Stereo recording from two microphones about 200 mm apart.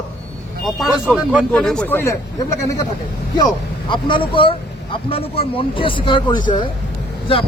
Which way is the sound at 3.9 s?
25° left (ahead or behind).